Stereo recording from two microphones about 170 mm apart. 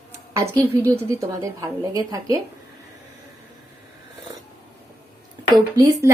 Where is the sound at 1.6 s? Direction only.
20° right (ahead or behind).